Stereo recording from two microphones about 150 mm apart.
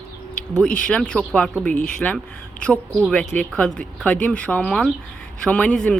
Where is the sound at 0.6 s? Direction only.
5° left (ahead or behind).